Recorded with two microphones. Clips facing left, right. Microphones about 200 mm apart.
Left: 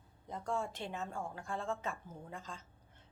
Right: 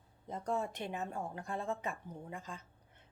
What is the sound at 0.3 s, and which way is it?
A woman's voice, 20° right (ahead or behind).